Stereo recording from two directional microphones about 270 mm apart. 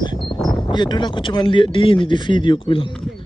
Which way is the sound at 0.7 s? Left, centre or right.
Centre.